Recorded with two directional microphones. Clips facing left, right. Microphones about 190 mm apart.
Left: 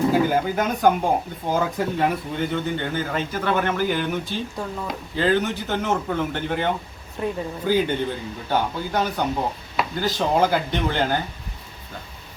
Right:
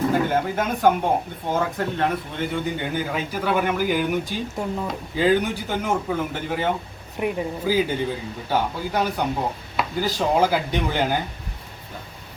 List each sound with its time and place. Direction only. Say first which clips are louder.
0.1 s speech: left 2 dB; centre (ahead or behind)
2.5 s speech: left 1 dB; 10° right (ahead or behind)
4.9 s speech: right 1 dB; 10° right (ahead or behind)
7.2 s speech: right 2 dB; 15° right (ahead or behind)
7.7 s speech: left 1 dB; 5° right (ahead or behind)